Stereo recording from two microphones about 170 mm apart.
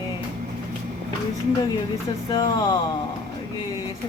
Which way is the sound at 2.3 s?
25° left (ahead or behind).